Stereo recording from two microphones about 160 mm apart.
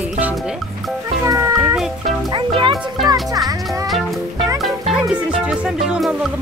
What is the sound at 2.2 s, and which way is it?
Music, 30° right (ahead or behind).